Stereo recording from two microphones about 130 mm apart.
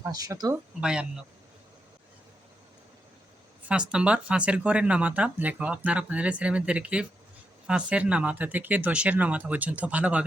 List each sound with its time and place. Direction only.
0.0 s speech: 25° right (ahead or behind)
0.8 s speech: 5° right (ahead or behind)
3.6 s speech: 10° right (ahead or behind)